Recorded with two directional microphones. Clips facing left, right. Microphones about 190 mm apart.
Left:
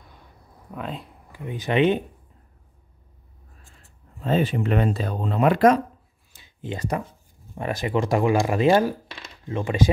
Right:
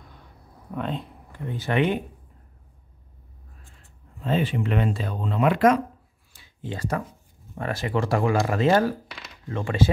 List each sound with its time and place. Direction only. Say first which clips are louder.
0.7 s speech: right 3 dB; centre (ahead or behind)
1.4 s speech: left 3 dB; 15° left (ahead or behind)
4.2 s speech: left 2 dB; 40° left (ahead or behind)
6.3 s a sound: left 2 dB; 20° left (ahead or behind)
7.5 s speech: left 2 dB; 15° left (ahead or behind)
9.1 s a sound: left 2 dB; 20° left (ahead or behind)